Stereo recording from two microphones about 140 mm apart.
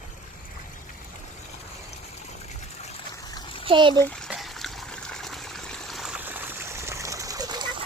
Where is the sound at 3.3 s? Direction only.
35° left (ahead or behind).